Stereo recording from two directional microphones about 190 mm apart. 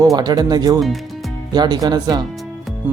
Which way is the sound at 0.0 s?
20° right (ahead or behind).